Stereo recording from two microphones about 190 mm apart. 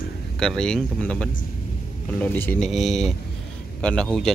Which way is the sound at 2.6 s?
Centre (ahead or behind).